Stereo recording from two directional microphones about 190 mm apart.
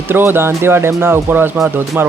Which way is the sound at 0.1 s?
10° right (ahead or behind).